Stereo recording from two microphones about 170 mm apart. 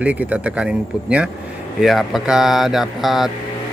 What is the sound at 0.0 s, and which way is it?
Speech, 10° right (ahead or behind).